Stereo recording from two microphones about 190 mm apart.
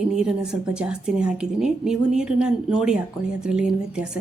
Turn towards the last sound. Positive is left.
turn(degrees=-5)  # may be behind; listen again after turning